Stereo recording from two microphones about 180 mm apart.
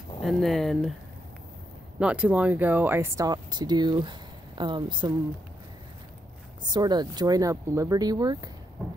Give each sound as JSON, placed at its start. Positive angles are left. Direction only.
{"t": 0.2, "sound": "speech", "side_deg": 0}
{"t": 2.0, "sound": "speech", "side_deg": -5}
{"t": 6.7, "sound": "speech", "side_deg": -25}